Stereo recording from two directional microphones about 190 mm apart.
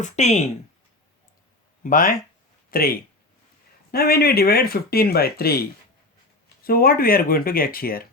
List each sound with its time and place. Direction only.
0.0 s speech: 35° left (ahead or behind)
1.8 s speech: 45° left (ahead or behind)
6.7 s speech: 50° left (ahead or behind)